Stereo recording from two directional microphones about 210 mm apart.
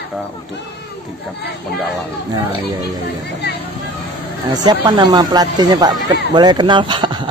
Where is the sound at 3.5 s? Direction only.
50° left (ahead or behind).